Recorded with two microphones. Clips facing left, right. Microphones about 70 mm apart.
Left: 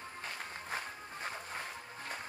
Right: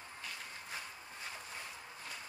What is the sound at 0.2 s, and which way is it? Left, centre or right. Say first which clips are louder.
Music: left 4 dB; left.